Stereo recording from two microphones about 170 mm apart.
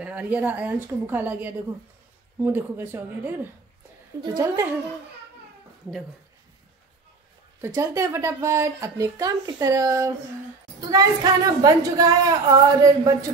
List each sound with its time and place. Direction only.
0.0 s a woman's voice: 10° right (ahead or behind)
4.2 s speech: 20° right (ahead or behind)
7.6 s a woman's voice: 15° right (ahead or behind)